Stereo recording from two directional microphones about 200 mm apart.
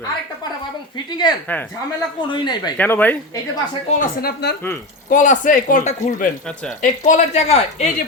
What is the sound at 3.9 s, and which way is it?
Speech, 50° left (ahead or behind).